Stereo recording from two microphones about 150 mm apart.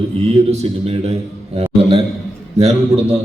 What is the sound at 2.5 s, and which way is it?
Music, 45° right (ahead or behind).